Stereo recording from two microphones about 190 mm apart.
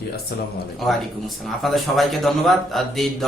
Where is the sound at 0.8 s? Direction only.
Centre (ahead or behind).